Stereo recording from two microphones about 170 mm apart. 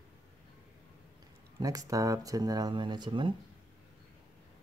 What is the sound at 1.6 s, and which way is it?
Speech, 20° right (ahead or behind).